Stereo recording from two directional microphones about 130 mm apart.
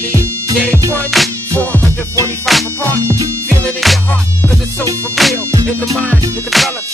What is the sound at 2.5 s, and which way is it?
Music, centre (ahead or behind).